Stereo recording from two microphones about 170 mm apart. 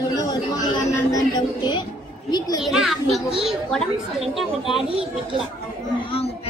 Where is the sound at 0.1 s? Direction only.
20° left (ahead or behind).